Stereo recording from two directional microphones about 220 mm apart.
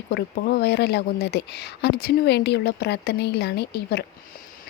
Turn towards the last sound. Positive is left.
turn(degrees=50)  # may be behind; listen again after turning